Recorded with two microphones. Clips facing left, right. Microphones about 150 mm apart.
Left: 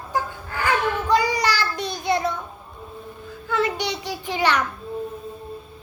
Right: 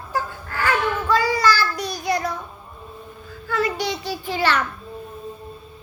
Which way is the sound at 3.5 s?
20° left (ahead or behind).